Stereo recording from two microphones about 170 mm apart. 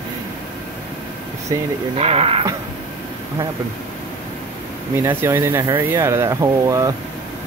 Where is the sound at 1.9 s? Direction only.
35° right (ahead or behind).